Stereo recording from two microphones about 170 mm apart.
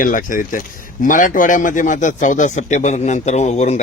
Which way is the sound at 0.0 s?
55° left (ahead or behind).